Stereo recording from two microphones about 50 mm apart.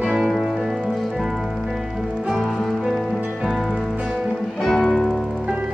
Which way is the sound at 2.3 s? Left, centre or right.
Centre.